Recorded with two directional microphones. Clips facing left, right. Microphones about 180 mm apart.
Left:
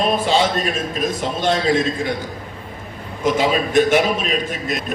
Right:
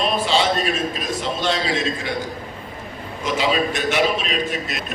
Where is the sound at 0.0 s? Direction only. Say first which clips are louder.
Left 3 dB; 45° left (ahead or behind).